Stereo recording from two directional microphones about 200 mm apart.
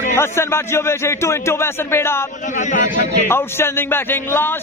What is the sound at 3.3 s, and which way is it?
A man's voice, 10° left (ahead or behind).